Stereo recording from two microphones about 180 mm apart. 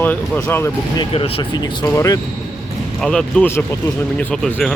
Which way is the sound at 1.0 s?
30° left (ahead or behind).